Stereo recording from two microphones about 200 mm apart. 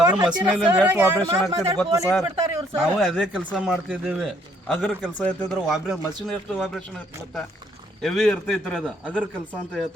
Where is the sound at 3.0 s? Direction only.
Centre (ahead or behind).